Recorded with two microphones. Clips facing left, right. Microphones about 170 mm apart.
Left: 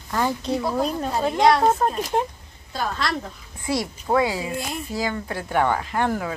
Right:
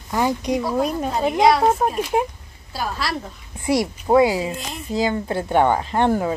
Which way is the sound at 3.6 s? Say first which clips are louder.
Right 5 dB; 20° right (ahead or behind).